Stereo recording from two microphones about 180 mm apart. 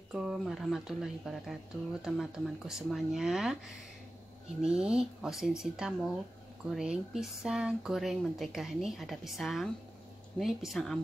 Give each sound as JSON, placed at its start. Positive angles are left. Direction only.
{"t": 0.1, "sound": "speech", "side_deg": -5}
{"t": 4.6, "sound": "speech", "side_deg": -5}